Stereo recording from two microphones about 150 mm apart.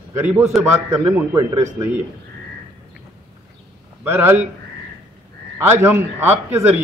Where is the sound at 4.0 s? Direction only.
15° right (ahead or behind).